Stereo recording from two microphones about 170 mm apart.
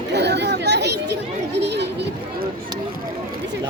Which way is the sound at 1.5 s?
90° right.